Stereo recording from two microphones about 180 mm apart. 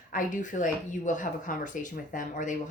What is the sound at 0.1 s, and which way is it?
A woman's voice, 45° left (ahead or behind).